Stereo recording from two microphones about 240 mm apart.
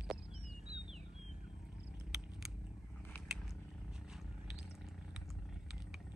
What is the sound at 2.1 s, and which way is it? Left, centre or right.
Purr, centre.